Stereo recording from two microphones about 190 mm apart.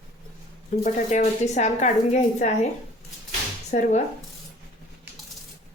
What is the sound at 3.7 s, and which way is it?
Speech, 40° left (ahead or behind).